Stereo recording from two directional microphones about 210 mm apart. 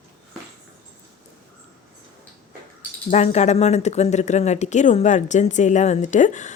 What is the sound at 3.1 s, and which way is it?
A woman's voice, 35° left (ahead or behind).